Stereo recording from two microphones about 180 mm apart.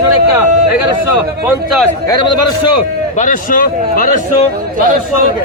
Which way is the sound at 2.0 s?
25° left (ahead or behind).